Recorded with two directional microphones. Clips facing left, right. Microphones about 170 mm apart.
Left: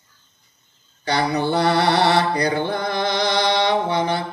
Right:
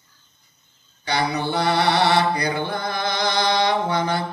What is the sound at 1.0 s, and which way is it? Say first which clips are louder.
Mantra: left 3 dB; 40° left (ahead or behind).